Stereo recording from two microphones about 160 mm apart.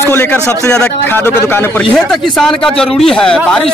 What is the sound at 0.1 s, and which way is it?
Speech, 10° left (ahead or behind).